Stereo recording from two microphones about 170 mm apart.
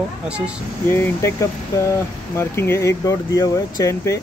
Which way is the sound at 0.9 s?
15° left (ahead or behind).